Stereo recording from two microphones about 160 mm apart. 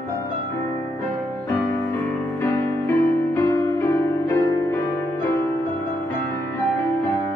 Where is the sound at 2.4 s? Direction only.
15° left (ahead or behind).